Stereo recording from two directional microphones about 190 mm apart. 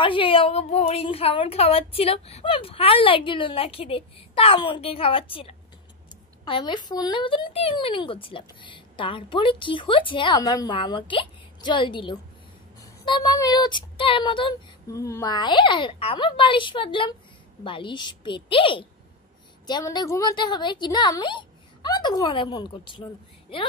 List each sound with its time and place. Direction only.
0.0 s a woman's voice: 25° left (ahead or behind)